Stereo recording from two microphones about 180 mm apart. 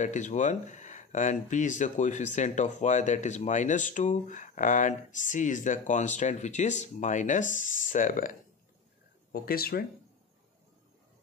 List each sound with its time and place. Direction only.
0.0 s speech: 40° left (ahead or behind)